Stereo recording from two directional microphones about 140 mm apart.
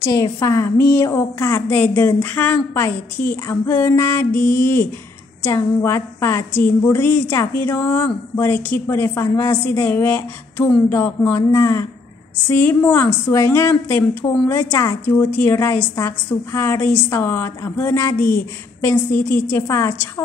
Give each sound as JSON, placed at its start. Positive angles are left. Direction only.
{"t": 0.0, "sound": "a woman's voice", "side_deg": 25}